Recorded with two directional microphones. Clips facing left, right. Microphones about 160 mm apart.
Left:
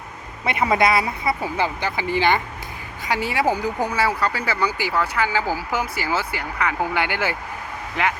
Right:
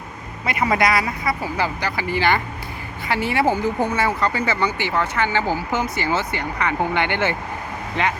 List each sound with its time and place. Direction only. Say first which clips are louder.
0.4 s speech: left 1 dB; 25° left (ahead or behind); by 7.3 s 10° left (ahead or behind)